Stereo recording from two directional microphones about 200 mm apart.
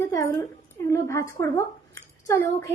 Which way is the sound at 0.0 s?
15° left (ahead or behind).